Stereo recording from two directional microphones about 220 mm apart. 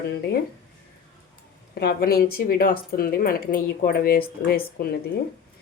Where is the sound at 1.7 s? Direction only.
45° left (ahead or behind).